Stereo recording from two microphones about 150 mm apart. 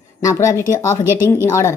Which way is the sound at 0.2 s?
20° left (ahead or behind).